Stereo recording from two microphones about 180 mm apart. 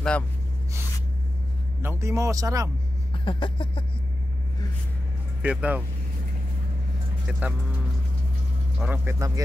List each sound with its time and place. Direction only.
1.8 s a man's voice: 15° right (ahead or behind)
3.3 s a sound: 25° left (ahead or behind)
5.4 s a man's voice: 10° right (ahead or behind)
7.2 s a man's voice: 5° right (ahead or behind)
8.7 s a man's voice: 10° right (ahead or behind)